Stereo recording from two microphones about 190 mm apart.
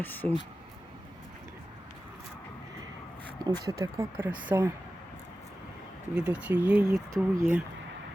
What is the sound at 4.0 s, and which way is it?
Speech, 20° right (ahead or behind).